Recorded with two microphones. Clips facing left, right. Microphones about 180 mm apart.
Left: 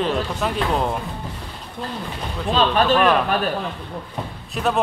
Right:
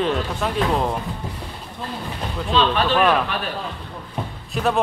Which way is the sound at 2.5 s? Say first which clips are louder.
Left 1 dB; 45° left (ahead or behind).